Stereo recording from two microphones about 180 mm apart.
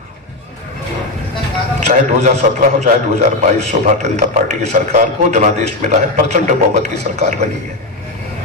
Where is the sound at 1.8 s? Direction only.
40° right (ahead or behind).